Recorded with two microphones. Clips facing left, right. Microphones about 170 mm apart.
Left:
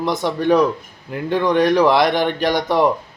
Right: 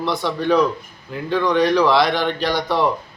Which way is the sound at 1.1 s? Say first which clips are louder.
Left 2 dB; 55° left (ahead or behind).